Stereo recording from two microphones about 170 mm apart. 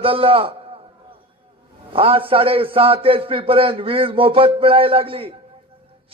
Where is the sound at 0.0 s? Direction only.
30° right (ahead or behind).